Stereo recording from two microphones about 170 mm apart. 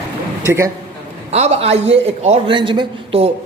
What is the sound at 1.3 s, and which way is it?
A man's voice, 40° right (ahead or behind).